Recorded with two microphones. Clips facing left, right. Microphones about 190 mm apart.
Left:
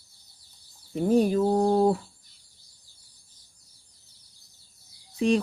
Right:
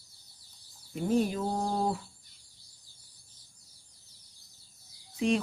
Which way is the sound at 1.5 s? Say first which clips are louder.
Left 10 dB; 60° left (ahead or behind).